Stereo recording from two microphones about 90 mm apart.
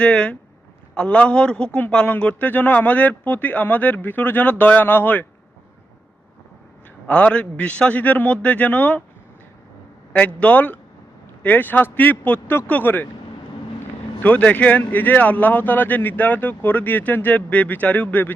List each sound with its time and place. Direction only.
0.0 s a man's voice: 15° left (ahead or behind)
7.1 s a man's voice: 15° left (ahead or behind)
10.1 s a man's voice: 15° left (ahead or behind)
14.2 s a man's voice: 15° left (ahead or behind)